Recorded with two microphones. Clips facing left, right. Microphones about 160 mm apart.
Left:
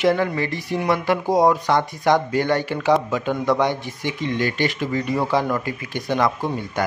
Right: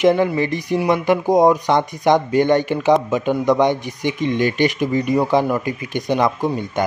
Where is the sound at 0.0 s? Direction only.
20° right (ahead or behind).